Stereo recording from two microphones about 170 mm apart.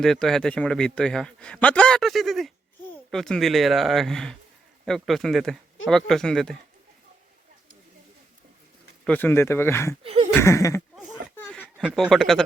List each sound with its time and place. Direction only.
0.0 s a man's voice: centre (ahead or behind)
9.0 s speech: 10° left (ahead or behind)
10.0 s a sound: 35° right (ahead or behind)
10.3 s speech: 15° left (ahead or behind)
10.9 s a sound: 5° left (ahead or behind)
11.9 s a man's voice: centre (ahead or behind)